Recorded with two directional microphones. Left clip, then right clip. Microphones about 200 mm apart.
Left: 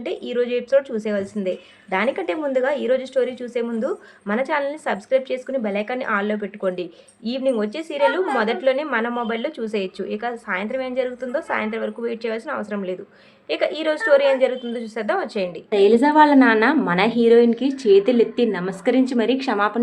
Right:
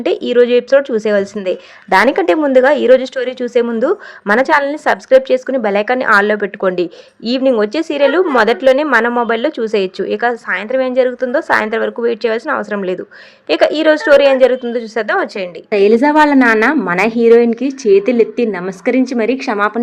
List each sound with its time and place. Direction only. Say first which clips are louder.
0.0 s speech: right 12 dB; 40° right (ahead or behind)